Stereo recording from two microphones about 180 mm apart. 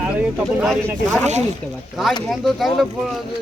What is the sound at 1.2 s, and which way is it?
Speech, 40° right (ahead or behind).